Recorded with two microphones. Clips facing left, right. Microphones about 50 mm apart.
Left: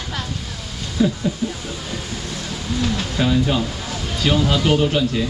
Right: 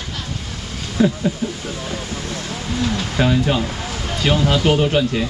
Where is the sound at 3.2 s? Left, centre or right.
Centre.